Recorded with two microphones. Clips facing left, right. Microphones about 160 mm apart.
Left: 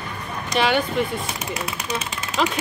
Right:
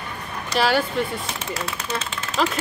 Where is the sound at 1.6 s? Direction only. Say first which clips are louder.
Even; 15° left (ahead or behind).